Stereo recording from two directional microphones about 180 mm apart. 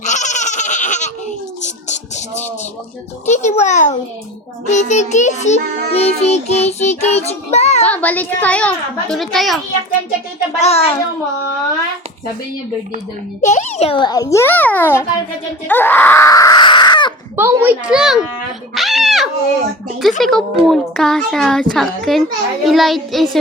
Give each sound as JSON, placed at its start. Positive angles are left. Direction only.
{"t": 0.0, "sound": "goat", "side_deg": 40}
{"t": 1.6, "sound": "music", "side_deg": 40}
{"t": 3.2, "sound": "child singing", "side_deg": 40}
{"t": 7.9, "sound": "a child's voice", "side_deg": 10}
{"t": 10.6, "sound": "child singing", "side_deg": 35}
{"t": 13.4, "sound": "a child's voice", "side_deg": 40}
{"t": 17.3, "sound": "a child's voice", "side_deg": -10}
{"t": 18.7, "sound": "a sound", "side_deg": 0}
{"t": 20.0, "sound": "a child's voice", "side_deg": 0}